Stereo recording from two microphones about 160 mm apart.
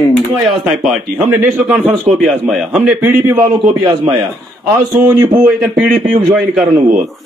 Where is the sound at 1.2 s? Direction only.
15° right (ahead or behind).